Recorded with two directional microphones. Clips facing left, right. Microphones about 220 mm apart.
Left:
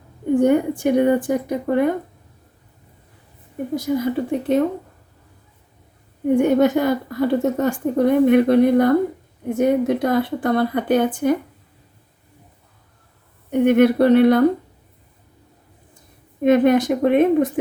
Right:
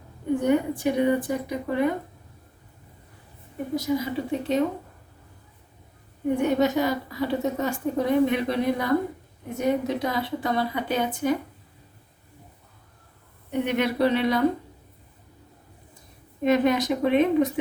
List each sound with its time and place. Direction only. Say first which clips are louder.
0.3 s a woman's voice: left 6 dB; 50° left (ahead or behind)
3.8 s a woman's voice: left 5 dB; 50° left (ahead or behind)
6.3 s a woman's voice: left 7 dB; 50° left (ahead or behind)
13.5 s a woman's voice: left 10 dB; 50° left (ahead or behind)
16.4 s a woman's voice: left 7 dB; 50° left (ahead or behind)